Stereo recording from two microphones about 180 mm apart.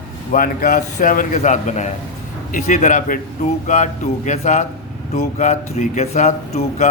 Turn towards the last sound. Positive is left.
turn(degrees=40)  # may be behind; listen again after turning